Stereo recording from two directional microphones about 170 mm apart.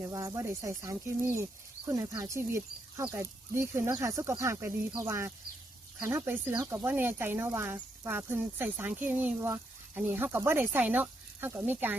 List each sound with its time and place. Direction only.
0.0 s speech: 20° right (ahead or behind)